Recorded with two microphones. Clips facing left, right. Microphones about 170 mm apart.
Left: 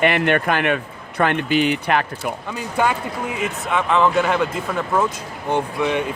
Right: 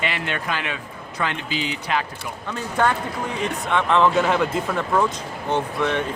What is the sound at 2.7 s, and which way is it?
Speech, 10° left (ahead or behind).